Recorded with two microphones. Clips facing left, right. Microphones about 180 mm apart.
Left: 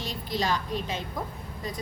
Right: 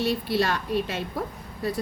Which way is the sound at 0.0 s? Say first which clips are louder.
Right 6 dB; 65° right (ahead or behind).